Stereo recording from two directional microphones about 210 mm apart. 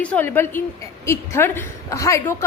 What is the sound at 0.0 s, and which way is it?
A woman's voice, 5° left (ahead or behind).